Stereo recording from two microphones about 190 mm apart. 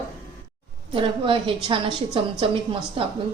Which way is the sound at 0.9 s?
25° right (ahead or behind).